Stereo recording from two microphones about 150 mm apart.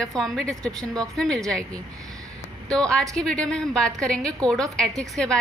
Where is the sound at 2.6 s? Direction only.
5° left (ahead or behind).